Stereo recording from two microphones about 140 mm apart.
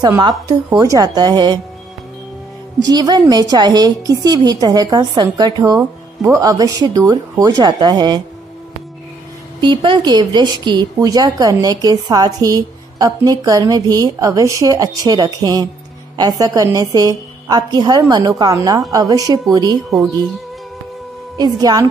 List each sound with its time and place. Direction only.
0.2 s a woman's voice: 30° right (ahead or behind)
2.8 s a woman's voice: 30° right (ahead or behind)
9.6 s a woman's voice: 35° right (ahead or behind)
21.4 s a woman's voice: 30° right (ahead or behind)